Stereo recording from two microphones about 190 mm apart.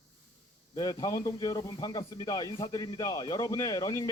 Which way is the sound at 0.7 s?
20° left (ahead or behind).